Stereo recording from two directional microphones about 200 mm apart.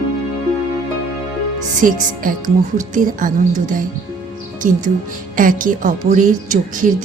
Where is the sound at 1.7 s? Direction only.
40° right (ahead or behind).